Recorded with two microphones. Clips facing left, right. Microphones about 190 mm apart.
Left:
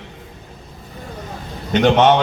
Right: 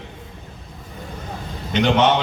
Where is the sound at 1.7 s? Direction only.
45° left (ahead or behind).